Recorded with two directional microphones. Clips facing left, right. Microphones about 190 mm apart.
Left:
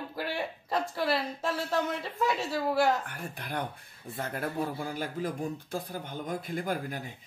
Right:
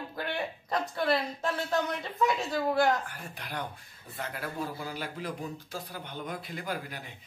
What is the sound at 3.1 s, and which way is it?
A man's voice, 50° left (ahead or behind).